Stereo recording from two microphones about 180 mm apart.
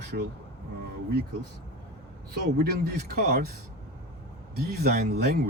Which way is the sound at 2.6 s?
55° right (ahead or behind).